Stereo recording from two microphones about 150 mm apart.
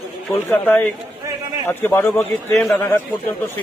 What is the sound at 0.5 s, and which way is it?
A man's voice, 10° left (ahead or behind).